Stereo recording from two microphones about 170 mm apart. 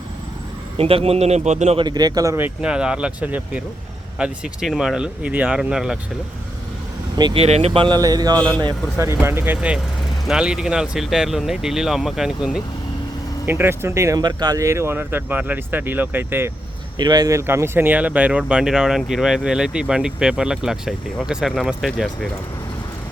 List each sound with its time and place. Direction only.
0.8 s a man's voice: 35° right (ahead or behind)
1.8 s speech: 25° right (ahead or behind); by 6.0 s 5° right (ahead or behind)
7.2 s speech: 25° right (ahead or behind)
7.4 s speech: 40° right (ahead or behind); by 16.5 s 10° right (ahead or behind)
17.0 s speech: 25° right (ahead or behind); by 22.3 s centre (ahead or behind)